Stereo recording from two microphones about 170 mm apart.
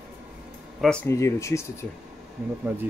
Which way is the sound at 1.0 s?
15° left (ahead or behind).